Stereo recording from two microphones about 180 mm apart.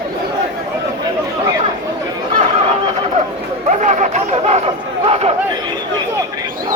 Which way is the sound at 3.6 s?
40° right (ahead or behind).